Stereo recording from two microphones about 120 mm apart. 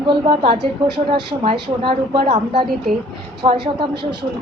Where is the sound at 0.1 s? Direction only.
45° right (ahead or behind).